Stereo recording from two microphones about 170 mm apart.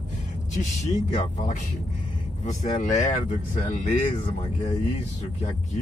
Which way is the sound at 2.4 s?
45° left (ahead or behind).